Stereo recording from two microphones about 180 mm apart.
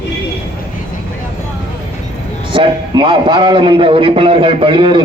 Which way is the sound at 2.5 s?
25° right (ahead or behind).